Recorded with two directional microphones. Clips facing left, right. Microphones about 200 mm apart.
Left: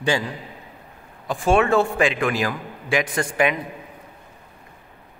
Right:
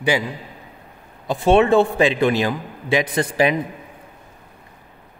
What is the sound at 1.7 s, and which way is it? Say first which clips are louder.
A man's voice: right 4 dB; 30° right (ahead or behind).